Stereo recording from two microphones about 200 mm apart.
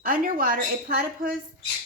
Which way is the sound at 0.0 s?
45° right (ahead or behind).